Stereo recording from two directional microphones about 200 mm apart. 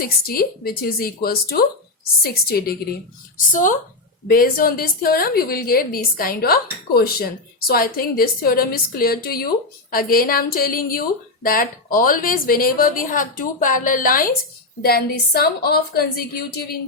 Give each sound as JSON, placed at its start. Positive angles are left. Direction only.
{"t": 0.0, "sound": "a woman's voice", "side_deg": 50}